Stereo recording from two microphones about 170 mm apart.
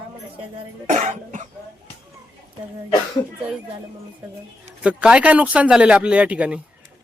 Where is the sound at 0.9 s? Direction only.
45° right (ahead or behind).